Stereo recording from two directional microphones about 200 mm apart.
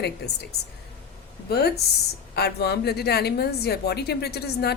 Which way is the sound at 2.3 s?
55° left (ahead or behind).